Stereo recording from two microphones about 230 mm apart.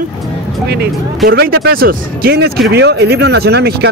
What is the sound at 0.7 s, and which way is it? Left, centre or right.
Speech, right.